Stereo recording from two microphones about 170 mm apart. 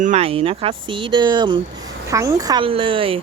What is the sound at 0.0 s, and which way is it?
Speech, 40° right (ahead or behind).